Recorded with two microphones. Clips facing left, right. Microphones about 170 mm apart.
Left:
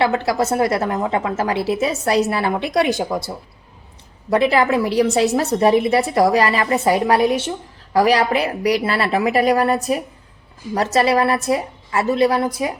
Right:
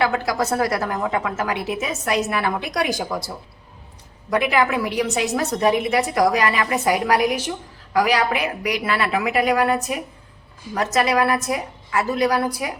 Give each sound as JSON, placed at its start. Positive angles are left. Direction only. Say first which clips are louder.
{"t": 0.0, "sound": "a woman's voice", "louder": "left 3 dB", "side_deg": 25}